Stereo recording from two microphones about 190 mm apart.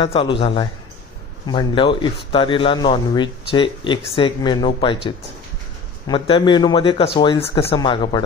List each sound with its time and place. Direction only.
0.0 s a man's voice: 30° left (ahead or behind)
6.0 s a man's voice: 25° left (ahead or behind)